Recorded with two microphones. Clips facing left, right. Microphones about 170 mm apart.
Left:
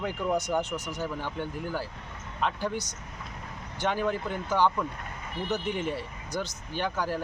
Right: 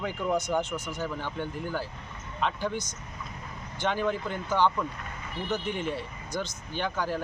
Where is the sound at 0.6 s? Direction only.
40° left (ahead or behind).